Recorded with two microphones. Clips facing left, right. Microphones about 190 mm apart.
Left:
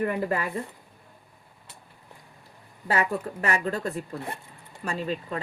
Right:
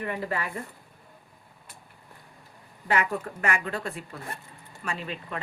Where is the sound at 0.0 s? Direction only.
45° left (ahead or behind).